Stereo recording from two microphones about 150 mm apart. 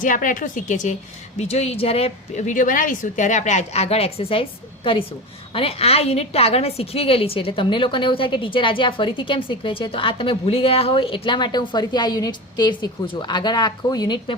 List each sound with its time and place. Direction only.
0.0 s speech: 60° left (ahead or behind)
1.4 s a woman's voice: 45° left (ahead or behind); by 14.3 s 30° left (ahead or behind)